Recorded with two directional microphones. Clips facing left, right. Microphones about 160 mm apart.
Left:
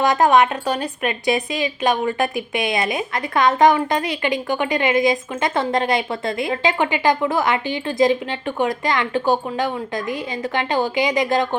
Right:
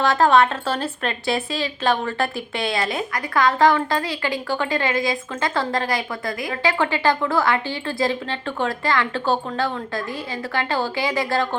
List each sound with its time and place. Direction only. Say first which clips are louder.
0.0 s a woman's voice: left 1 dB; 15° left (ahead or behind)